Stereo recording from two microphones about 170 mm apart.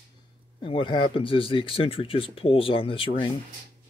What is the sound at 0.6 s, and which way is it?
Speech, 30° left (ahead or behind).